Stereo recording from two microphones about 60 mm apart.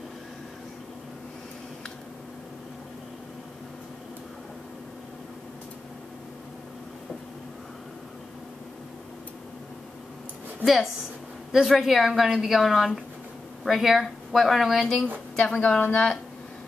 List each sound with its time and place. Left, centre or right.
10.6 s a woman's voice: centre
15.3 s a woman's voice: centre